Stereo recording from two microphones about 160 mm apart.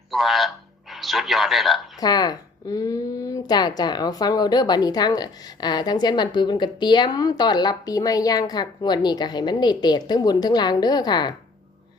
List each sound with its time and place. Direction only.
0.1 s a man's voice: centre (ahead or behind)
2.0 s speech: 25° left (ahead or behind)